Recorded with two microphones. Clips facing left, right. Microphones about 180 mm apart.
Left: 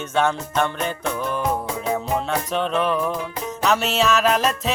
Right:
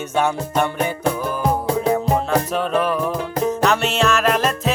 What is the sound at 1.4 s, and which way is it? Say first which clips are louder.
Music: right 10 dB; 35° right (ahead or behind).